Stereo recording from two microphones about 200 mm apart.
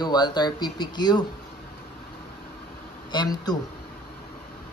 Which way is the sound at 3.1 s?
20° left (ahead or behind).